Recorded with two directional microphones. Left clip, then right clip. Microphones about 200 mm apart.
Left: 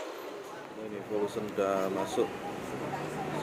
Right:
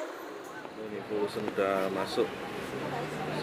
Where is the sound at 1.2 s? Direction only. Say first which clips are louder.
Right 2 dB; centre (ahead or behind).